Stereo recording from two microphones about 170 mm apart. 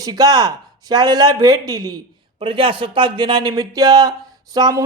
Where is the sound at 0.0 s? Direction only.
20° right (ahead or behind).